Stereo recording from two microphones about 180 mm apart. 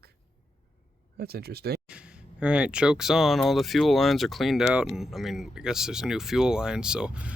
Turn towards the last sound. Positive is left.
turn(degrees=-5)  # may be behind; listen again after turning